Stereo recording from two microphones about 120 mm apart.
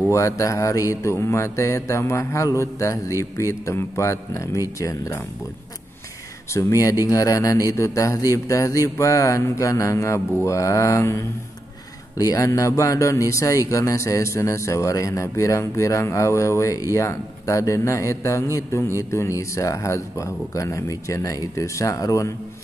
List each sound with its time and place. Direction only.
0.1 s speech: 25° left (ahead or behind)
6.5 s speech: 30° left (ahead or behind)